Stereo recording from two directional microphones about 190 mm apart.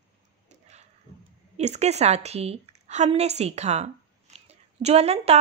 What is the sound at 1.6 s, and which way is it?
A woman's voice, 35° right (ahead or behind).